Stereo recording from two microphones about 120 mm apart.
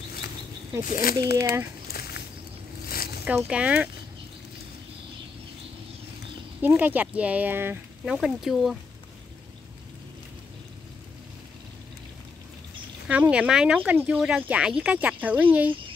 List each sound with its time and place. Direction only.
0.7 s speech: 30° right (ahead or behind)
3.3 s speech: 10° right (ahead or behind)
6.6 s speech: 15° right (ahead or behind)
8.0 s speech: 5° right (ahead or behind)
13.1 s speech: 10° right (ahead or behind)